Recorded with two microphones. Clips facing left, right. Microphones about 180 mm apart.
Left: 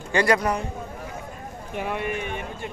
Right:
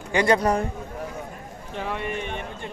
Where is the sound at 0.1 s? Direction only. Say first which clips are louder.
Right 1 dB; 20° right (ahead or behind).